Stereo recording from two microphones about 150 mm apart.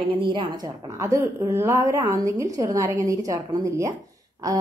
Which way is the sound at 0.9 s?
20° right (ahead or behind).